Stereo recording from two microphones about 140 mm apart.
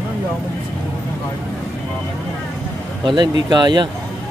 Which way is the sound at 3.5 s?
30° right (ahead or behind).